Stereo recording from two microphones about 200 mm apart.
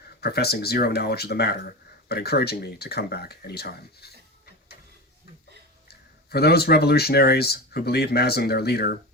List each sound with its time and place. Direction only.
0.2 s speech: 50° left (ahead or behind)
5.9 s speech: 50° left (ahead or behind)